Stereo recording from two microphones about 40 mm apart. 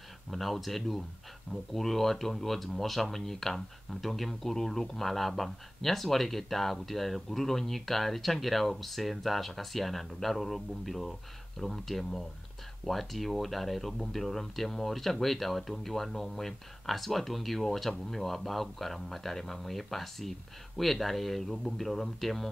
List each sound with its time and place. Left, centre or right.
0.3 s speech: centre